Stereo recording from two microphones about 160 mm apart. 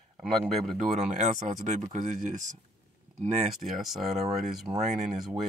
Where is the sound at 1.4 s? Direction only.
50° right (ahead or behind).